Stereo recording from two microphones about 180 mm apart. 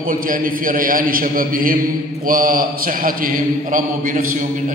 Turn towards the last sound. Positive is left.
turn(degrees=-50)  # may be behind; listen again after turning